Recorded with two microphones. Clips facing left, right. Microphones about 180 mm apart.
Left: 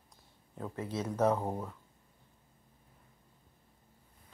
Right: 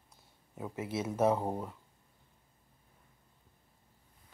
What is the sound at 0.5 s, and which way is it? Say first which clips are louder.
Speech: right 1 dB; 10° right (ahead or behind).